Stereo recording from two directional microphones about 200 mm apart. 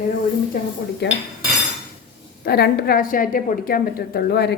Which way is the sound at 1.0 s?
60° left (ahead or behind).